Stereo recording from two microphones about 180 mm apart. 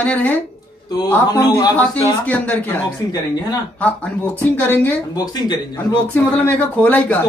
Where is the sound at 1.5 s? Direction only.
20° left (ahead or behind).